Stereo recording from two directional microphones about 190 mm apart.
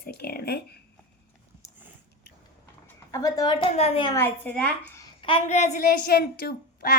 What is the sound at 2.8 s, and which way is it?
Speech, 15° left (ahead or behind).